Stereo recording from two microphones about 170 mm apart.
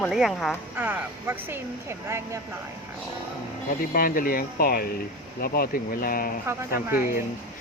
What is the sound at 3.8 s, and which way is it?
Speech, 60° left (ahead or behind).